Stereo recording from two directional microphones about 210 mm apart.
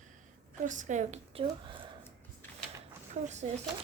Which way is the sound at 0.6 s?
35° right (ahead or behind).